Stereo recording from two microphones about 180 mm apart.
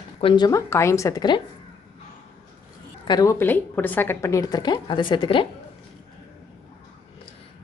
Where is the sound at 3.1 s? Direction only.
20° left (ahead or behind).